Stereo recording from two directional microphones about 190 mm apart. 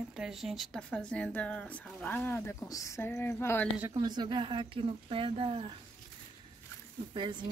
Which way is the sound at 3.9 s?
20° right (ahead or behind).